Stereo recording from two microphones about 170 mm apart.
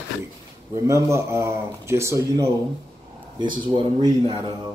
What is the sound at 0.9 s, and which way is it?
Speech, 15° right (ahead or behind).